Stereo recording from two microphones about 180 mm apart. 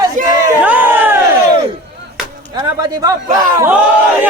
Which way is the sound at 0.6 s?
10° right (ahead or behind).